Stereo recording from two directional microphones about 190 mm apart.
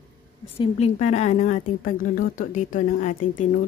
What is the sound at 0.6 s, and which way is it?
A woman's voice, 35° left (ahead or behind).